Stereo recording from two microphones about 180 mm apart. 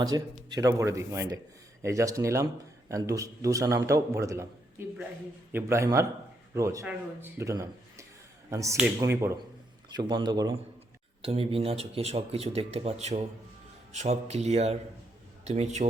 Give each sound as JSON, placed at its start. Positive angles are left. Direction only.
{"t": 0.0, "sound": "a man's voice", "side_deg": -20}
{"t": 11.2, "sound": "speech", "side_deg": -35}